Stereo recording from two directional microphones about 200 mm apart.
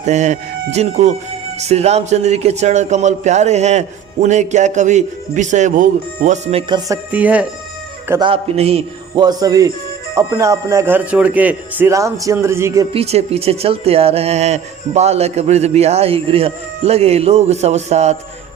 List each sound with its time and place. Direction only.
0.0 s a man's voice: 35° right (ahead or behind); by 7.4 s 5° right (ahead or behind)
8.2 s a man's voice: 30° right (ahead or behind)
12.9 s a man's voice: 30° right (ahead or behind)